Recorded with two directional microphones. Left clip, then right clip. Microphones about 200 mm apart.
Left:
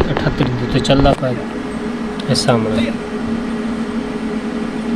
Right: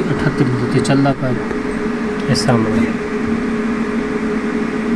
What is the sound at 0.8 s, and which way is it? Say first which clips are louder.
Speech: left 4 dB; 15° left (ahead or behind).